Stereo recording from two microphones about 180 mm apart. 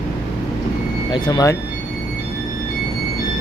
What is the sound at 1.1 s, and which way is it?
Speech, 25° left (ahead or behind).